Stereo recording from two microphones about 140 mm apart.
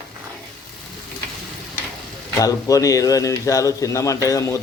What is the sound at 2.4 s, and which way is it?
A man's voice, 25° left (ahead or behind).